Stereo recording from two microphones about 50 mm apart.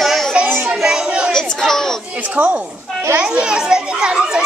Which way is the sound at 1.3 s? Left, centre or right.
Centre.